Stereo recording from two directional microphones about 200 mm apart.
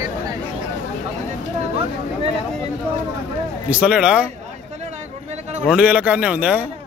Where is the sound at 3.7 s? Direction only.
5° right (ahead or behind).